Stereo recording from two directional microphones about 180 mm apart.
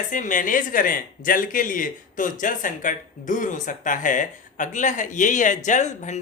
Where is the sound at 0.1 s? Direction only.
45° left (ahead or behind).